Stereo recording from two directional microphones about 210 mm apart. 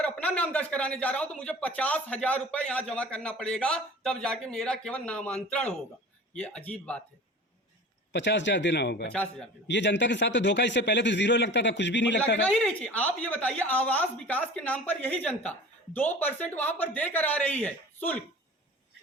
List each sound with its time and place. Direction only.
0.0 s speech: 5° left (ahead or behind)
8.1 s a man's voice: 55° left (ahead or behind)
12.5 s speech: 5° left (ahead or behind)